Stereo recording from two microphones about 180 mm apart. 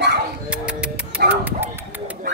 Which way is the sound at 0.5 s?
5° right (ahead or behind).